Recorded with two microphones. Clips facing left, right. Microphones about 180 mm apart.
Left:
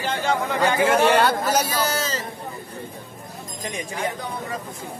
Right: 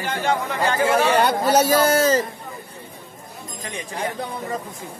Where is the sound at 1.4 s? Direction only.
30° right (ahead or behind).